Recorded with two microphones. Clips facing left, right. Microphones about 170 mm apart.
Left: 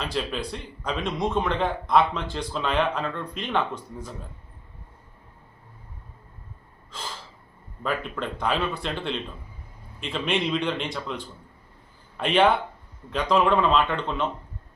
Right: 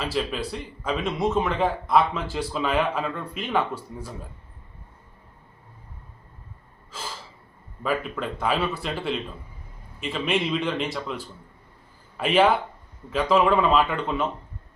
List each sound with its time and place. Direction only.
0.0 s a man's voice: 5° right (ahead or behind)
7.8 s a man's voice: 5° right (ahead or behind)